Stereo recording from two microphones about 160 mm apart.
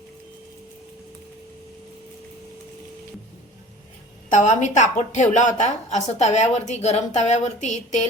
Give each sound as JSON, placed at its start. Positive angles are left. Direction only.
{"t": 4.3, "sound": "a woman's voice", "side_deg": 50}